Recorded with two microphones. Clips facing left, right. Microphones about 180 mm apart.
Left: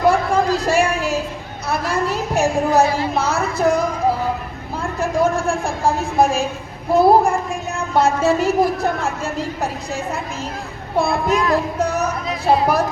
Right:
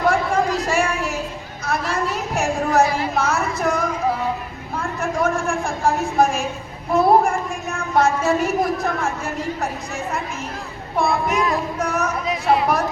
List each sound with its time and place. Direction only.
0.1 s a sound: 30° left (ahead or behind)
1.6 s a woman's voice: 30° left (ahead or behind)
4.8 s a woman's voice: 30° left (ahead or behind)